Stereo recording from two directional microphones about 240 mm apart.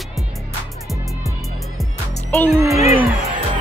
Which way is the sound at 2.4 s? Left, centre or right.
Centre.